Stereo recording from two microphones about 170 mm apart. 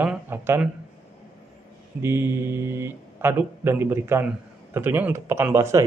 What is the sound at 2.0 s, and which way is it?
Speech, 15° right (ahead or behind).